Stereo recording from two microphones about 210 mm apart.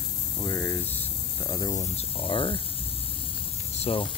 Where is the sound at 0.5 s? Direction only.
10° left (ahead or behind).